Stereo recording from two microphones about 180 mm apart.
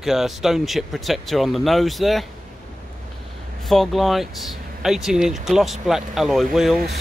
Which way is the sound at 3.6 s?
Centre (ahead or behind).